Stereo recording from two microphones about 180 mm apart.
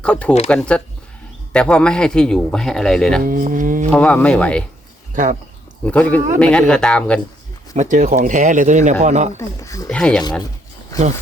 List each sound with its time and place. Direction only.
0.0 s a man's voice: 5° left (ahead or behind)
3.2 s speech: 50° right (ahead or behind)
3.9 s speech: 5° left (ahead or behind)
5.1 s speech: 45° right (ahead or behind)
5.8 s a man's voice: 10° left (ahead or behind)
7.8 s speech: 45° right (ahead or behind)
9.4 s speech: 15° left (ahead or behind)
9.9 s a man's voice: 5° left (ahead or behind)